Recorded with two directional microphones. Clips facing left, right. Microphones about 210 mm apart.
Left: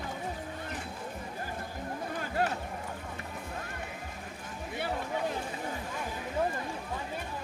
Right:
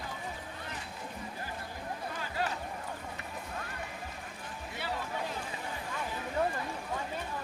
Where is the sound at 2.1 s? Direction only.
50° left (ahead or behind).